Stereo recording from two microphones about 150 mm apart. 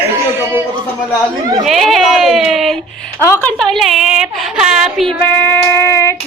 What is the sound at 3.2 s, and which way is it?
Speech, 15° left (ahead or behind).